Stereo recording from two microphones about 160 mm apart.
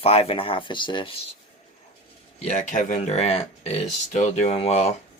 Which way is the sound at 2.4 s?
45° left (ahead or behind).